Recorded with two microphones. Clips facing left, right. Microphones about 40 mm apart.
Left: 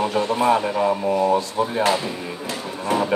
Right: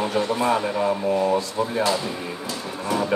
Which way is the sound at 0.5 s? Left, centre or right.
Centre.